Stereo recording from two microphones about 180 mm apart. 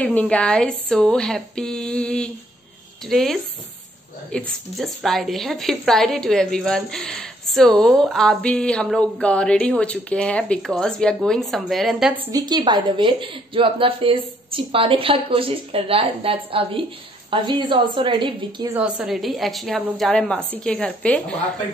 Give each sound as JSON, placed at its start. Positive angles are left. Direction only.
{"t": 0.0, "sound": "a woman's voice", "side_deg": 5}
{"t": 12.3, "sound": "a woman's voice", "side_deg": -20}
{"t": 18.7, "sound": "a woman's voice", "side_deg": -5}